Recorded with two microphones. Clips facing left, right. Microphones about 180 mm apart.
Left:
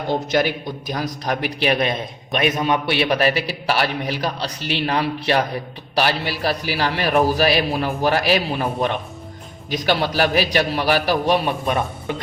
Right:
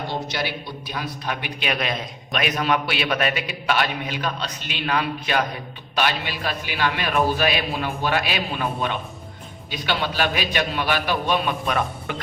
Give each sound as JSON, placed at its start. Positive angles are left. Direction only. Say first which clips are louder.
{"t": 0.1, "sound": "a man's voice", "louder": "left 13 dB", "side_deg": 50}